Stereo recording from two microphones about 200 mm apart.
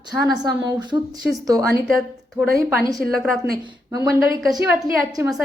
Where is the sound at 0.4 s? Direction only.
20° right (ahead or behind).